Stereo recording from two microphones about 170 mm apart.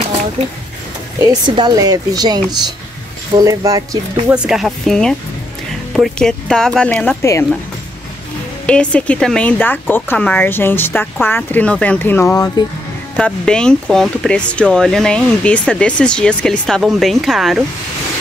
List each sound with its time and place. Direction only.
1.2 s a woman's voice: 25° right (ahead or behind)
4.3 s speech: 5° right (ahead or behind)
8.6 s speech: 5° left (ahead or behind)
13.1 s speech: 5° left (ahead or behind)